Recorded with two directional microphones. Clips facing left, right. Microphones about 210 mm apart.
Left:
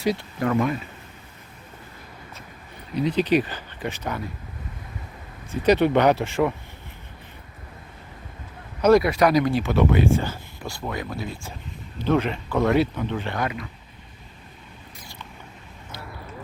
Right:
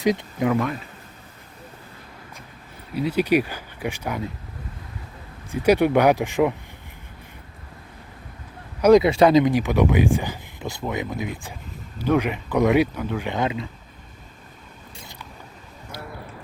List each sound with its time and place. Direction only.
0.0 s speech: 20° right (ahead or behind)
2.9 s speech: 5° right (ahead or behind)
5.5 s speech: 10° right (ahead or behind)
8.8 s speech: 20° right (ahead or behind)
13.3 s speech: 25° right (ahead or behind)